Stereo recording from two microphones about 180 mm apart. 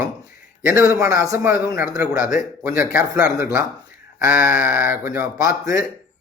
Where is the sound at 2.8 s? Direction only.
10° right (ahead or behind).